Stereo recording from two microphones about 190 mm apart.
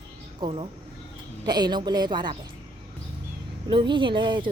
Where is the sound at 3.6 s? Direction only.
25° right (ahead or behind).